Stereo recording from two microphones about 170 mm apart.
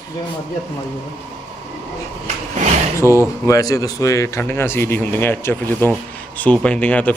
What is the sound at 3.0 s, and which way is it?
Speech, 15° right (ahead or behind).